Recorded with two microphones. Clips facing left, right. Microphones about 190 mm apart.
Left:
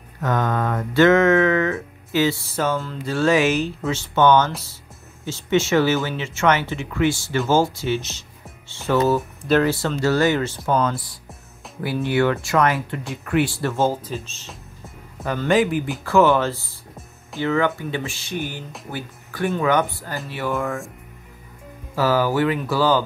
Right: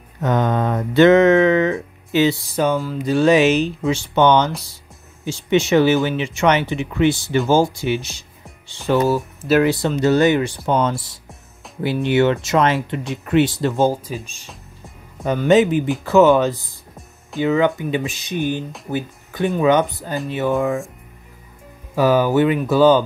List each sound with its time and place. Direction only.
0.2 s speech: 20° right (ahead or behind)
10.7 s speech: 25° right (ahead or behind)
21.9 s speech: 20° right (ahead or behind)